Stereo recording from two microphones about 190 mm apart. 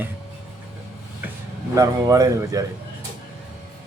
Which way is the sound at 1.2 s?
10° right (ahead or behind).